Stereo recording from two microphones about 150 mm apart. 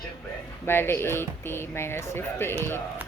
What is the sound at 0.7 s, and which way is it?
Speech, 15° left (ahead or behind).